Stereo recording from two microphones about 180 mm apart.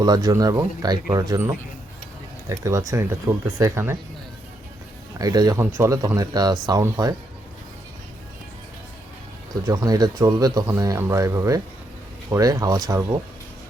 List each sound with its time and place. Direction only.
0.0 s speech: 20° right (ahead or behind)
5.2 s speech: 20° right (ahead or behind)
9.6 s speech: 20° right (ahead or behind)